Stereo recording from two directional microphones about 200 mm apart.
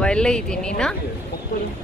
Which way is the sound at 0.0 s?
5° left (ahead or behind).